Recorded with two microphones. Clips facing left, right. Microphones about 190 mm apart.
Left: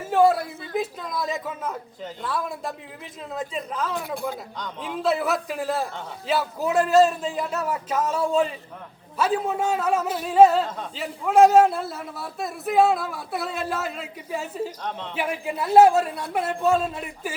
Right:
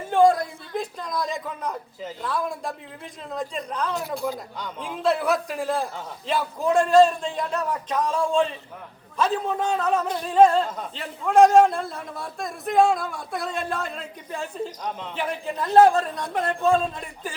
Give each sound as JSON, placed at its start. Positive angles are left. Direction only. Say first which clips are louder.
{"t": 0.1, "sound": "a man's voice", "louder": "right 1 dB", "side_deg": 5}
{"t": 3.9, "sound": "a man's voice", "louder": "right 1 dB", "side_deg": 55}
{"t": 4.2, "sound": "a man's voice", "louder": "right 1 dB", "side_deg": -5}